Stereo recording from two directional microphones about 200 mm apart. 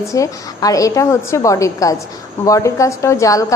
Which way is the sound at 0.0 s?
15° left (ahead or behind).